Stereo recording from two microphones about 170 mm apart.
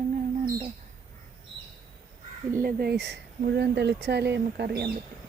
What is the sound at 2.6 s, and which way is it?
Speech, 65° right (ahead or behind).